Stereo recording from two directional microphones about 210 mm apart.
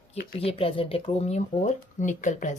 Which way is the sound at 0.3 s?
25° left (ahead or behind).